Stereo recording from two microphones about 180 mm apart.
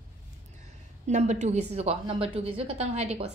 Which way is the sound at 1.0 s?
40° right (ahead or behind).